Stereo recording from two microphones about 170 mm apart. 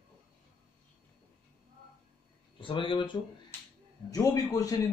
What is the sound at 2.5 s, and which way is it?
A man's voice, 30° left (ahead or behind).